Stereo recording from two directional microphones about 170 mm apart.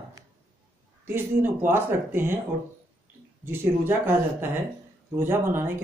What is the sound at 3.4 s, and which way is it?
Speech, 15° right (ahead or behind).